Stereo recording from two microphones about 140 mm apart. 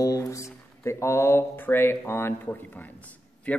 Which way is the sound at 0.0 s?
25° left (ahead or behind).